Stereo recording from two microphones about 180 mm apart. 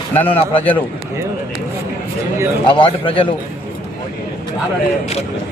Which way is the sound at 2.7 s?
30° left (ahead or behind).